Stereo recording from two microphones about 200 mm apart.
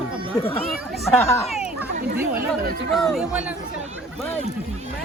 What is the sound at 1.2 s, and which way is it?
Speech, 10° left (ahead or behind).